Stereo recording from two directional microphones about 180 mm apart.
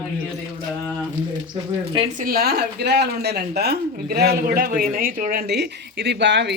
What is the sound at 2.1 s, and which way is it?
Speech, 50° right (ahead or behind).